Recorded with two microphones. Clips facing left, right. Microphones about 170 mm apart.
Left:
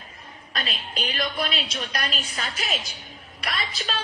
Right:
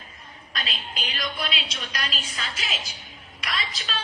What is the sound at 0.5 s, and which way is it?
A woman's voice, 55° left (ahead or behind).